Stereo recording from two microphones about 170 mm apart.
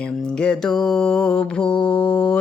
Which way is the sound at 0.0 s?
5° left (ahead or behind).